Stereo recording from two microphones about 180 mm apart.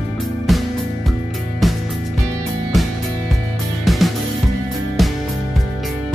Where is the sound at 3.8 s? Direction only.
Centre (ahead or behind).